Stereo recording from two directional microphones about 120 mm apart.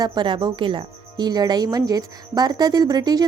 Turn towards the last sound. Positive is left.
turn(degrees=-35)  # may be behind; listen again after turning